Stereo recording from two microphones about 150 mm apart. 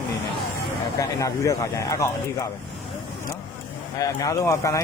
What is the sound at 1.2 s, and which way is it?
Speech, 20° left (ahead or behind).